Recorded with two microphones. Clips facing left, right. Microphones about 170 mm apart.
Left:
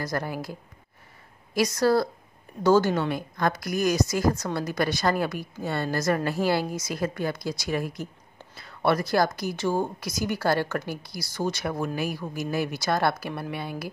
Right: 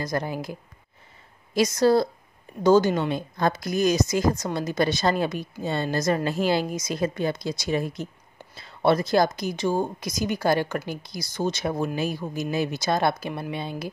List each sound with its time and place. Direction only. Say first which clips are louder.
0.0 s a woman's voice: right 2 dB; 20° right (ahead or behind)